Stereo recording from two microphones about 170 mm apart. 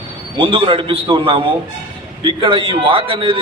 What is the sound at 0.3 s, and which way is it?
Speech, 30° right (ahead or behind).